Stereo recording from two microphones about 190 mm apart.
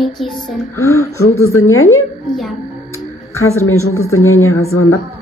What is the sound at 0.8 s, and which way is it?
Speech, 15° left (ahead or behind).